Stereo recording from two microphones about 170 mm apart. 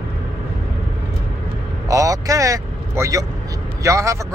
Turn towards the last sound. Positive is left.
turn(degrees=-20)  # may be behind; listen again after turning